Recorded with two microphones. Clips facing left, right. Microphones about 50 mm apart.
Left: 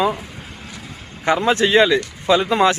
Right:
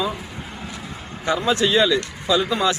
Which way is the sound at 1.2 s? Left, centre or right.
Left.